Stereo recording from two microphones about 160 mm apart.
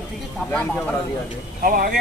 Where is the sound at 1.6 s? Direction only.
60° right (ahead or behind).